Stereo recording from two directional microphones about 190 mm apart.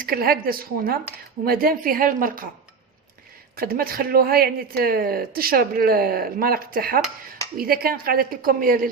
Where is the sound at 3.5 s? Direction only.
50° right (ahead or behind).